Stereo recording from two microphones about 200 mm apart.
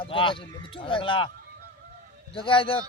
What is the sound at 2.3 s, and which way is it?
Speech, 25° left (ahead or behind).